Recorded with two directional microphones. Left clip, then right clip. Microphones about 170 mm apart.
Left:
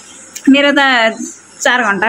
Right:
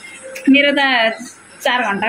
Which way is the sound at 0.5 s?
35° left (ahead or behind).